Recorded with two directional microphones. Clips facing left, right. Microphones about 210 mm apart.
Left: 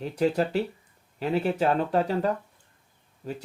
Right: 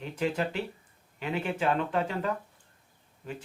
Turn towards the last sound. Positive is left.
turn(degrees=35)  # may be behind; listen again after turning